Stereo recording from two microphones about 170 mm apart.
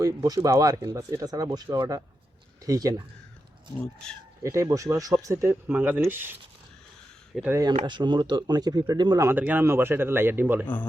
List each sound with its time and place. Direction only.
0.0 s speech: 20° right (ahead or behind)
4.4 s speech: 20° right (ahead or behind)
7.5 s speech: 20° right (ahead or behind)